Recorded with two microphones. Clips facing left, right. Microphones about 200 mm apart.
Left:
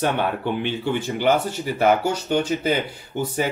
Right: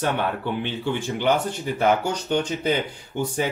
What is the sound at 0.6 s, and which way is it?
Speech, 15° left (ahead or behind).